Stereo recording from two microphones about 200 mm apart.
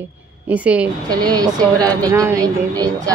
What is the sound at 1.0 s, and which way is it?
Speech, 20° right (ahead or behind).